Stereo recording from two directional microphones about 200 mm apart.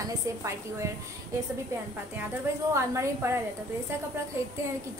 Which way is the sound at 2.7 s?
15° right (ahead or behind).